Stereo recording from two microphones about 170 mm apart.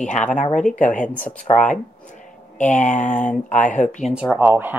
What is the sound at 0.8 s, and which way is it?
Speech, 50° left (ahead or behind).